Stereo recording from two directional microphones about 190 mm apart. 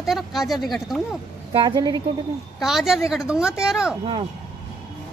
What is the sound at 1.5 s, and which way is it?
Speech, 25° right (ahead or behind).